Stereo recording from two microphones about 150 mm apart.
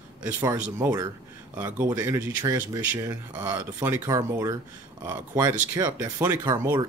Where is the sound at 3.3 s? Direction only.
25° right (ahead or behind).